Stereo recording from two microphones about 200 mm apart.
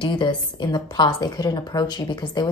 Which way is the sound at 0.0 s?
25° left (ahead or behind).